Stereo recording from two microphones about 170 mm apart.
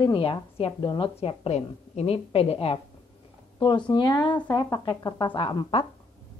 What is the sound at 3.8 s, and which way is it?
A woman's voice, 25° left (ahead or behind).